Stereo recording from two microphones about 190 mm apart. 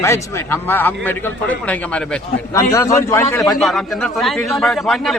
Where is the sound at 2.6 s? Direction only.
15° left (ahead or behind).